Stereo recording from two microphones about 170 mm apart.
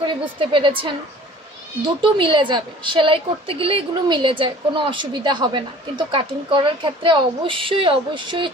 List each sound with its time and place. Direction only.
0.0 s a woman's voice: 30° right (ahead or behind)
2.0 s a woman's voice: 30° right (ahead or behind)